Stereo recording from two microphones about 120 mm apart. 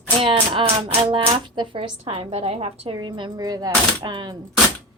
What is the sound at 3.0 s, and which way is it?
Speech, 40° right (ahead or behind).